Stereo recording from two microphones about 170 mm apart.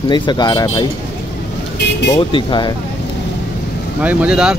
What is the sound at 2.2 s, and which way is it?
Speech, 30° left (ahead or behind).